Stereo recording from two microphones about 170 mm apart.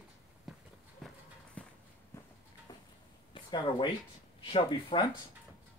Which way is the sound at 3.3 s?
30° left (ahead or behind).